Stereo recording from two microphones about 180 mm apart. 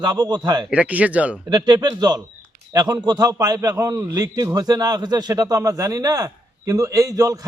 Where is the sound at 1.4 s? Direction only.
20° right (ahead or behind).